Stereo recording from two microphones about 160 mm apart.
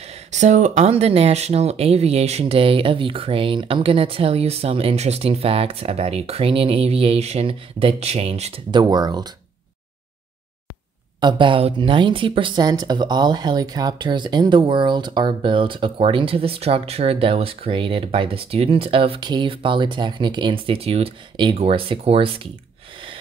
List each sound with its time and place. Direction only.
0.0 s speech: 45° right (ahead or behind)
8.8 s speech: 25° right (ahead or behind)
11.1 s speech: 30° right (ahead or behind)